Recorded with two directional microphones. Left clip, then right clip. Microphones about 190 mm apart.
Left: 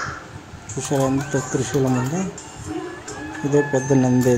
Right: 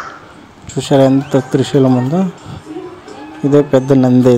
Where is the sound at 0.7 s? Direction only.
25° right (ahead or behind).